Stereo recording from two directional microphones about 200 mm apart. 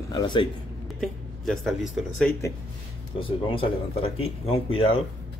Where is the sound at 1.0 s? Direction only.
Centre (ahead or behind).